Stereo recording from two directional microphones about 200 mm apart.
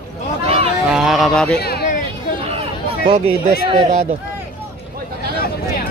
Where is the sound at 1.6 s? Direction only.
50° left (ahead or behind).